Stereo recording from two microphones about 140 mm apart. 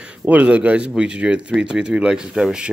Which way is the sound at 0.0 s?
10° right (ahead or behind).